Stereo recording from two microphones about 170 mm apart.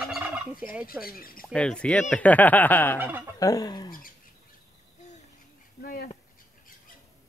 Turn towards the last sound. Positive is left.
turn(degrees=60)  # may be behind; listen again after turning